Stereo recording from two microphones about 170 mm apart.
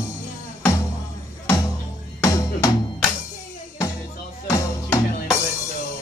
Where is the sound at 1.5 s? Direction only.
20° left (ahead or behind).